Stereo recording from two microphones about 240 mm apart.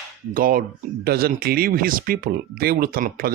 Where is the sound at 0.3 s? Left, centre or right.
Right.